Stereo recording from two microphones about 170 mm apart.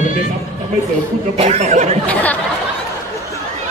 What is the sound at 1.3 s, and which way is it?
Speech, 40° right (ahead or behind).